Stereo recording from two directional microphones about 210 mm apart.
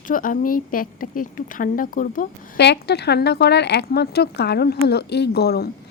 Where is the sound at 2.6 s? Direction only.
55° left (ahead or behind).